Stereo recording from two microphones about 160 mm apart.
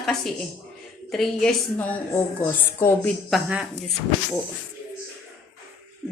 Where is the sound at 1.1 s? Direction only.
Centre (ahead or behind).